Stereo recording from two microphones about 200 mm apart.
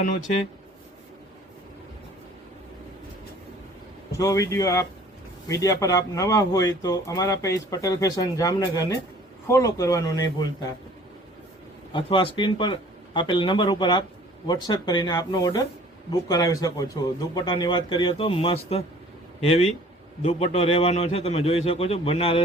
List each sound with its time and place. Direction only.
4.2 s speech: 15° left (ahead or behind)
11.9 s a man's voice: 25° left (ahead or behind)